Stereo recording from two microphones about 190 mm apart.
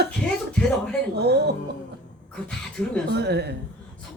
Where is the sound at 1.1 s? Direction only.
60° right (ahead or behind).